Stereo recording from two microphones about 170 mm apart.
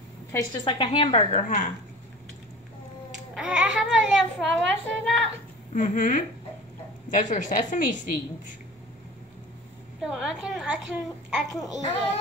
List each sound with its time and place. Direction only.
0.3 s a woman's voice: 25° left (ahead or behind); by 1.7 s 50° left (ahead or behind)
3.3 s a child's voice: 5° right (ahead or behind)
5.7 s a woman's voice: 45° left (ahead or behind)
10.0 s a child's voice: 5° right (ahead or behind)